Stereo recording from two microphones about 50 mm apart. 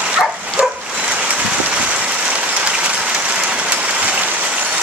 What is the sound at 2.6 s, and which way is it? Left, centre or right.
Applause, right.